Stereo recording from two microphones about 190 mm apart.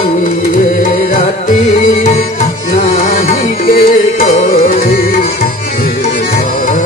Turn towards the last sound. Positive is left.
turn(degrees=45)  # may be behind; listen again after turning